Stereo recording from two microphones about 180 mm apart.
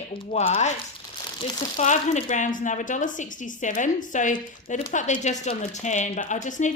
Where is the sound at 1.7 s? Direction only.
40° left (ahead or behind).